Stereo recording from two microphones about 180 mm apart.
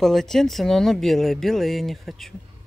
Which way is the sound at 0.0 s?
Centre (ahead or behind).